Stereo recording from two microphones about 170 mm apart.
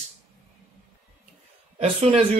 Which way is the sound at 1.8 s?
35° right (ahead or behind).